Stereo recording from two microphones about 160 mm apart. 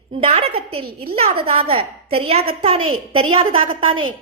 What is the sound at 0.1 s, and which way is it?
A woman's voice, 40° right (ahead or behind).